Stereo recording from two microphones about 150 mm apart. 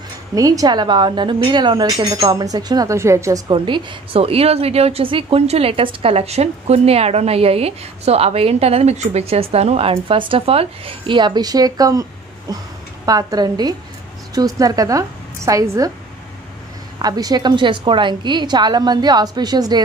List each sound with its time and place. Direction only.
0.3 s a woman's voice: 25° right (ahead or behind)
3.5 s a woman's voice: 35° right (ahead or behind)
17.0 s a woman's voice: 25° right (ahead or behind)